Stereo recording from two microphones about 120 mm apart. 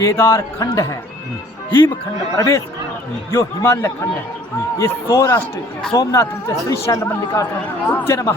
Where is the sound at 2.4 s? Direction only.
25° left (ahead or behind).